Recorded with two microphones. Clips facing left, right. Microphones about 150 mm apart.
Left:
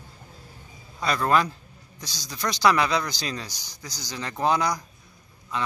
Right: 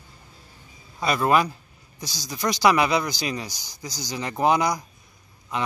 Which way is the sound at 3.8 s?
15° right (ahead or behind).